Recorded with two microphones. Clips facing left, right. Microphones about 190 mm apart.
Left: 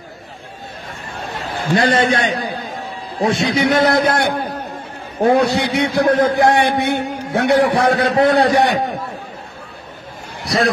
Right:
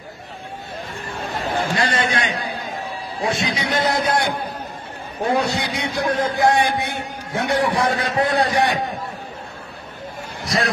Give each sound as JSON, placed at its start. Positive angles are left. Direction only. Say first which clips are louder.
{"t": 1.8, "sound": "a man's voice", "louder": "left 6 dB", "side_deg": 35}
{"t": 3.2, "sound": "a man's voice", "louder": "left 7 dB", "side_deg": 65}